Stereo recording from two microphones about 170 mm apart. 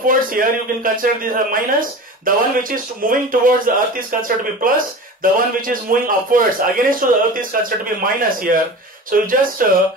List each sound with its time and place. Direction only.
0.0 s a man's voice: 55° right (ahead or behind)